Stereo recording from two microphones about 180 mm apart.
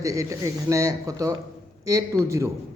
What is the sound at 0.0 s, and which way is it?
Speech, 20° right (ahead or behind).